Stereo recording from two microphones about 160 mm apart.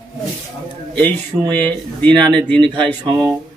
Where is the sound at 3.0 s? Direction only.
25° right (ahead or behind).